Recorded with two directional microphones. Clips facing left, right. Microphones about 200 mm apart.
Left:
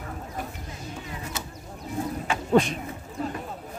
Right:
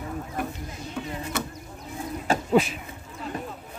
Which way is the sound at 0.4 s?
55° right (ahead or behind).